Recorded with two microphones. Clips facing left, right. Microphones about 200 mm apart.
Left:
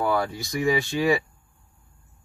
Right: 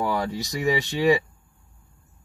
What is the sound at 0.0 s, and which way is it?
Speech, 20° right (ahead or behind).